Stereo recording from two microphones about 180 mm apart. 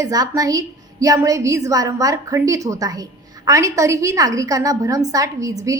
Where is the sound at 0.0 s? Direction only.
20° right (ahead or behind).